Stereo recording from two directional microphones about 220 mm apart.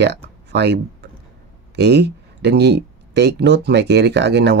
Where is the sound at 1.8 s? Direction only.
50° right (ahead or behind).